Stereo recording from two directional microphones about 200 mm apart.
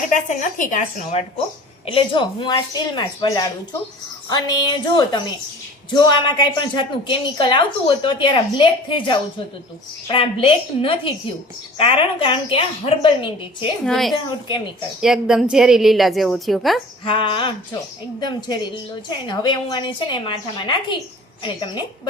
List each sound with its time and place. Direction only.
0.1 s a woman's voice: 40° left (ahead or behind)
1.9 s a woman's voice: 25° left (ahead or behind)
13.8 s a woman's voice: centre (ahead or behind)
14.3 s a woman's voice: 25° left (ahead or behind)
15.0 s a woman's voice: 5° right (ahead or behind)
17.1 s a woman's voice: 25° left (ahead or behind)